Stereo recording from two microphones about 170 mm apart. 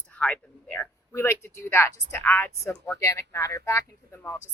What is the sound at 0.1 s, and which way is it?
Speech, 10° left (ahead or behind).